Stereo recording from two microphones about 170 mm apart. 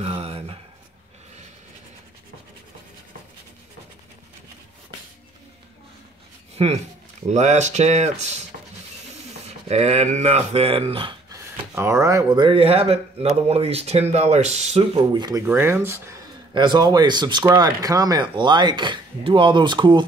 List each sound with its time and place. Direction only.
0.0 s a sound: 35° right (ahead or behind)
6.5 s speech: 40° right (ahead or behind)
9.7 s speech: 40° right (ahead or behind)
11.3 s speech: 15° right (ahead or behind)
16.5 s speech: 25° right (ahead or behind)